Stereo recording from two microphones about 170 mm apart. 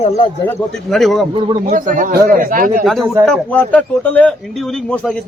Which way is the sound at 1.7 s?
50° right (ahead or behind).